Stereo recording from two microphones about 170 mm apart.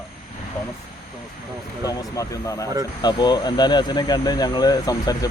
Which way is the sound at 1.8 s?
20° left (ahead or behind).